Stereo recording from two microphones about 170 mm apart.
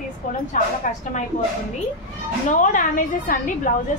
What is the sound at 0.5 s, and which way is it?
Speech, 45° left (ahead or behind).